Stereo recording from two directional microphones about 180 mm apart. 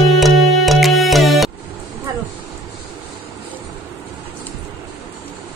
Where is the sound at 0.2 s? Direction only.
Centre (ahead or behind).